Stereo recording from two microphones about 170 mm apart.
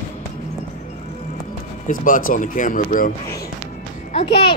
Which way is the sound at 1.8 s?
55° left (ahead or behind).